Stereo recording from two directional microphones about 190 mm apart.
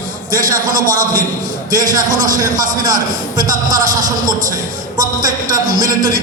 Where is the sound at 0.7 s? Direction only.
45° right (ahead or behind).